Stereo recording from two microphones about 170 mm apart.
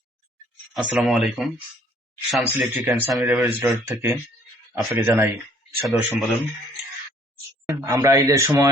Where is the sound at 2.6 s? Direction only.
10° right (ahead or behind).